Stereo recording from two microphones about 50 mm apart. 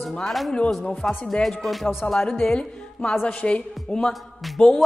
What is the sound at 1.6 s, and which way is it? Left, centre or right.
A woman's voice, centre.